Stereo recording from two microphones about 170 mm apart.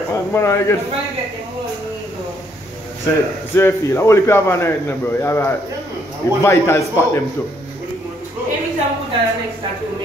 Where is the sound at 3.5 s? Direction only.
15° left (ahead or behind).